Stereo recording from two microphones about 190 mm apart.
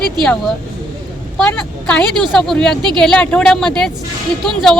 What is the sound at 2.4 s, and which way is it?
Speech, 5° left (ahead or behind).